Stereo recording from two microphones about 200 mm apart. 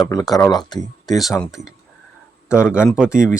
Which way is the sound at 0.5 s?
20° left (ahead or behind).